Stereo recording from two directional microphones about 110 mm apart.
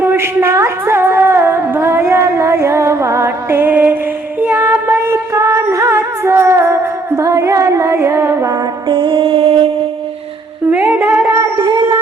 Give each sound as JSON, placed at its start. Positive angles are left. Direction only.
{"t": 0.0, "sound": "music", "side_deg": -20}
{"t": 8.4, "sound": "mantra", "side_deg": -45}
{"t": 10.7, "sound": "music", "side_deg": -15}
{"t": 10.9, "sound": "a sound", "side_deg": -25}
{"t": 11.6, "sound": "cat", "side_deg": -45}